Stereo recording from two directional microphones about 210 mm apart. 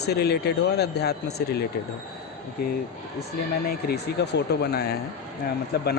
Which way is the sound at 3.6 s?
50° left (ahead or behind).